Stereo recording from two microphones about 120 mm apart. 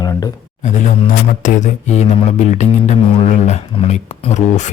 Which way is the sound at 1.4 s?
90° left.